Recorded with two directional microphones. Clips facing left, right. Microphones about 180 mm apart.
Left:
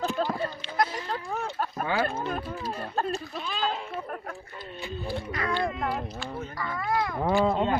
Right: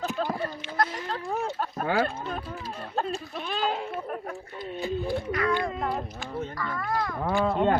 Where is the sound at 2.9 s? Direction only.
Centre (ahead or behind).